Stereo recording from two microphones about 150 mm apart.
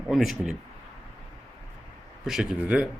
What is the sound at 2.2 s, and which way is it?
Speech, centre (ahead or behind).